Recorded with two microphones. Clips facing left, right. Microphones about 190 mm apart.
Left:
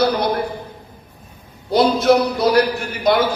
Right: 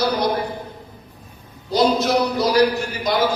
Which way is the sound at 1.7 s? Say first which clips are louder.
Left 3 dB; 55° left (ahead or behind).